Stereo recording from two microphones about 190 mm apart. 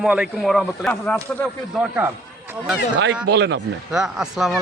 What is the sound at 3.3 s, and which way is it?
Speech, 65° right (ahead or behind).